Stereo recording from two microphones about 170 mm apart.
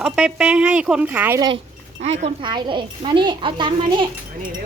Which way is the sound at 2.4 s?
25° right (ahead or behind).